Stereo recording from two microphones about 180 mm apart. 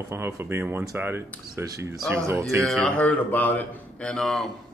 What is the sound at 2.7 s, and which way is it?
A man's voice, 5° left (ahead or behind).